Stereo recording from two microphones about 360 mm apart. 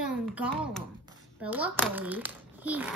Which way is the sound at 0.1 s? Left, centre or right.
Centre.